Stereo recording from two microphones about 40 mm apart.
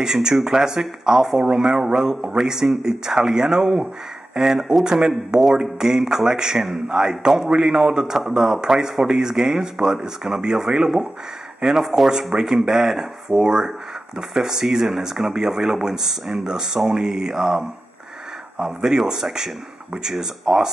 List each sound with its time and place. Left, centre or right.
0.0 s speech: centre